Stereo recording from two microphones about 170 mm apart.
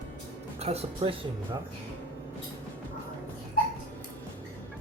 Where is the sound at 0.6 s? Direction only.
35° right (ahead or behind).